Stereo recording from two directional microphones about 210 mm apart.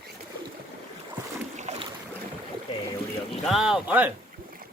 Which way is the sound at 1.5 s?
35° right (ahead or behind).